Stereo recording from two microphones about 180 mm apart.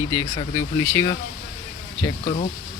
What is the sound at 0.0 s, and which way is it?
Speech, 15° left (ahead or behind).